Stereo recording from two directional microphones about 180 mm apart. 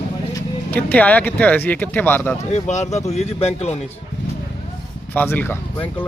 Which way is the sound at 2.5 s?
40° left (ahead or behind).